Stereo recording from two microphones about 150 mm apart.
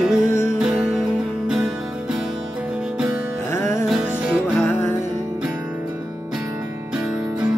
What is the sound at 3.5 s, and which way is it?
Music, 20° left (ahead or behind).